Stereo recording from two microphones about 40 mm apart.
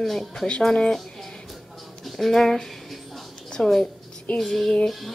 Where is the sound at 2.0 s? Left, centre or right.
Centre.